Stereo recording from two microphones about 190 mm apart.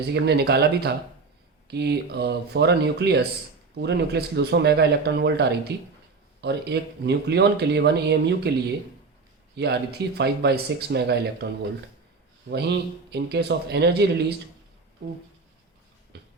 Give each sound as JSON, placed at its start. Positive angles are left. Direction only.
{"t": 0.1, "sound": "speech", "side_deg": -60}
{"t": 9.6, "sound": "speech", "side_deg": -60}
{"t": 12.5, "sound": "speech", "side_deg": -65}
{"t": 16.1, "sound": "music", "side_deg": -60}